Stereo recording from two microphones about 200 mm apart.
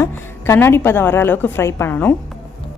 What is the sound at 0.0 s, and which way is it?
A woman's voice, 10° left (ahead or behind).